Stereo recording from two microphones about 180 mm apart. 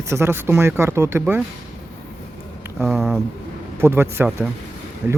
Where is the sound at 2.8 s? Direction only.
5° right (ahead or behind).